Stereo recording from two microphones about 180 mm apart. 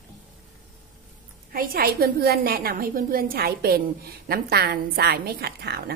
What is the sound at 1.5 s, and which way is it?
A woman's voice, 55° right (ahead or behind).